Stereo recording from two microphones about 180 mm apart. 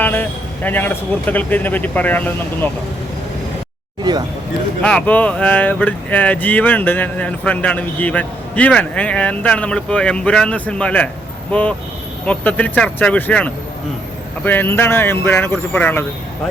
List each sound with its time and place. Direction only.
0.0 s a man's voice: 10° left (ahead or behind)
4.1 s speech: 20° right (ahead or behind)
4.8 s speech: 5° left (ahead or behind)
12.2 s speech: 10° left (ahead or behind)